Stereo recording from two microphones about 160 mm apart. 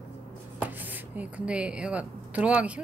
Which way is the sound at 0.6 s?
10° right (ahead or behind).